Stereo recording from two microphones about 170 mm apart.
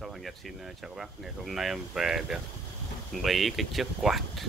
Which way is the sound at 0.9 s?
Centre (ahead or behind).